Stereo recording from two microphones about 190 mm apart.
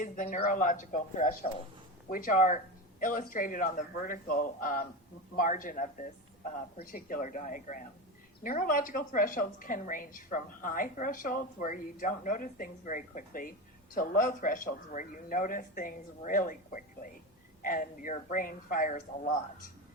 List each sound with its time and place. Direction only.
0.0 s a woman's voice: 40° left (ahead or behind)